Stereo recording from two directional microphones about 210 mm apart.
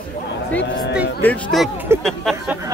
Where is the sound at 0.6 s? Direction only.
55° left (ahead or behind).